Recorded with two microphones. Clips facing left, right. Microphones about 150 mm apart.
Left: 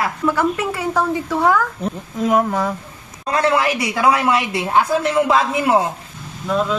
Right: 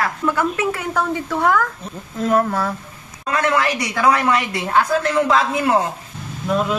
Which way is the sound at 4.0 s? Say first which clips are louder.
Even; 10° left (ahead or behind).